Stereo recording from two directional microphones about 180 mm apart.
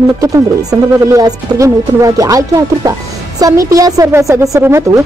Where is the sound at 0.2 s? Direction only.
20° right (ahead or behind).